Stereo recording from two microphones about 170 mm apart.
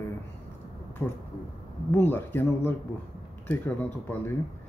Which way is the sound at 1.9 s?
10° left (ahead or behind).